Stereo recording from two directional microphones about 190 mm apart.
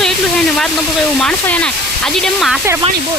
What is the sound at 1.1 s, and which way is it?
Speech, 5° left (ahead or behind).